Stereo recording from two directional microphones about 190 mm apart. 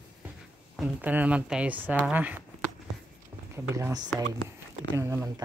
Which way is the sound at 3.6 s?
15° right (ahead or behind).